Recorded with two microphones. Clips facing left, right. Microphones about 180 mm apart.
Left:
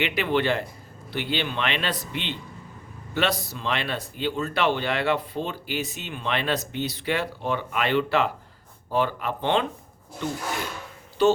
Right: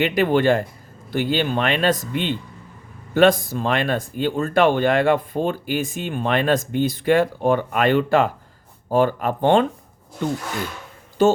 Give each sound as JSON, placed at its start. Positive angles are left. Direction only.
{"t": 0.0, "sound": "speech", "side_deg": -45}
{"t": 11.2, "sound": "speech", "side_deg": -45}